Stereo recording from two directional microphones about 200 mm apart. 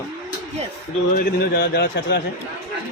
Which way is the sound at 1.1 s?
50° left (ahead or behind).